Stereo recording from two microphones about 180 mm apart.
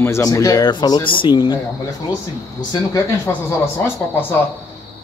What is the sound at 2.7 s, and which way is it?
Speech, 15° left (ahead or behind).